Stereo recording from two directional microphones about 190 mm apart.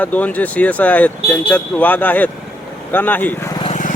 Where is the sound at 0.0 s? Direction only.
10° left (ahead or behind).